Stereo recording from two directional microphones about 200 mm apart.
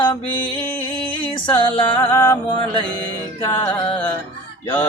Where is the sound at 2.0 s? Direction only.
10° left (ahead or behind).